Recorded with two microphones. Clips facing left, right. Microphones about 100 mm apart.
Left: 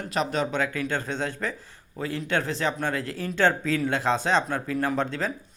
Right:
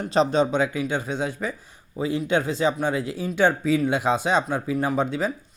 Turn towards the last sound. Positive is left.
turn(degrees=-10)  # may be behind; listen again after turning